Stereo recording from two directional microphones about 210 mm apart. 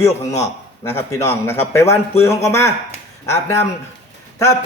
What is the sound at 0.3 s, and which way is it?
Speech, 30° left (ahead or behind).